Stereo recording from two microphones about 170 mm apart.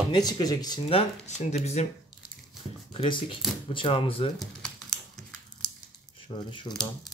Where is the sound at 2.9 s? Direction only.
30° left (ahead or behind).